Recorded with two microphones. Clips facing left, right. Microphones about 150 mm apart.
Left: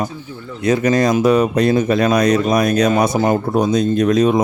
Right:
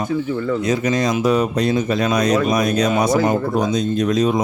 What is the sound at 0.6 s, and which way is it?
Speech, 55° left (ahead or behind).